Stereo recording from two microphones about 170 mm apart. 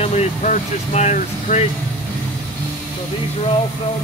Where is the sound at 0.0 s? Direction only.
40° left (ahead or behind).